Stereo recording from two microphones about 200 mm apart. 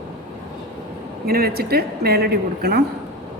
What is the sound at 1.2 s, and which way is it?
A woman's voice, 50° right (ahead or behind).